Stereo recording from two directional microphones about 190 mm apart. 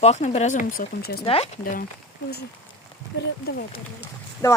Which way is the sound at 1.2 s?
30° left (ahead or behind).